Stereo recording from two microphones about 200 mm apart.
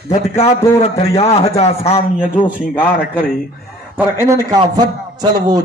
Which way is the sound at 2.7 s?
10° left (ahead or behind).